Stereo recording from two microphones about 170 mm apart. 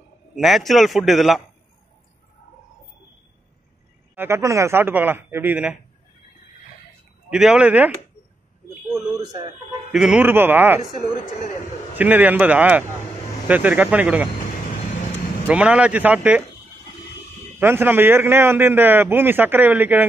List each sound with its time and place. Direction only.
0.4 s a man's voice: centre (ahead or behind)
4.1 s a man's voice: 15° right (ahead or behind)
7.2 s a man's voice: 5° right (ahead or behind)
9.2 s speech: 25° right (ahead or behind)
9.9 s a man's voice: 5° right (ahead or behind)
10.8 s speech: 25° right (ahead or behind)
12.0 s a man's voice: 10° right (ahead or behind)
15.4 s a man's voice: 5° right (ahead or behind)
17.6 s a man's voice: 10° right (ahead or behind)